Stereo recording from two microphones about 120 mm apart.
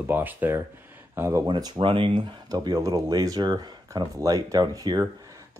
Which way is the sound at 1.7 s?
50° right (ahead or behind).